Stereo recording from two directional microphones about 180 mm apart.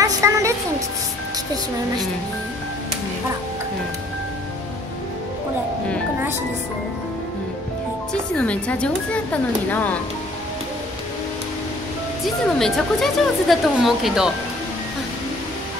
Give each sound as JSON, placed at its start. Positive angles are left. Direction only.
{"t": 0.0, "sound": "a sound", "side_deg": -15}
{"t": 8.1, "sound": "speech", "side_deg": 5}
{"t": 12.4, "sound": "speech", "side_deg": 0}